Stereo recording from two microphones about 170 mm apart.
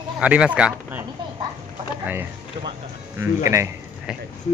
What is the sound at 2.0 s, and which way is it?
Speech, 10° right (ahead or behind).